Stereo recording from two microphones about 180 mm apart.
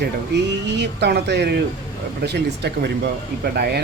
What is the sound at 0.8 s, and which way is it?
A man's voice, 70° right (ahead or behind).